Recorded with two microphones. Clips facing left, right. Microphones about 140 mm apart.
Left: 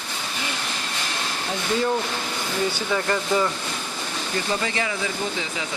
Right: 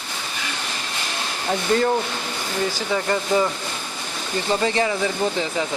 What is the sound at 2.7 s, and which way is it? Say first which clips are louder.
Speech: right 1 dB; 30° right (ahead or behind).